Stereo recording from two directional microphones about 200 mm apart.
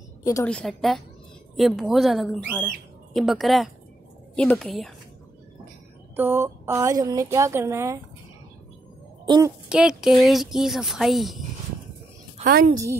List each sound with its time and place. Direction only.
0.2 s a woman's voice: 15° left (ahead or behind)
0.5 s speech: 5° left (ahead or behind)
6.1 s a woman's voice: 10° right (ahead or behind)
9.2 s a child's voice: 20° right (ahead or behind)
9.7 s speech: 5° right (ahead or behind)
12.4 s a woman's voice: 50° right (ahead or behind)